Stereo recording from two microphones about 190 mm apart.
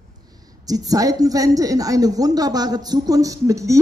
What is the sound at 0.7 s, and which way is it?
A woman's voice, 20° right (ahead or behind).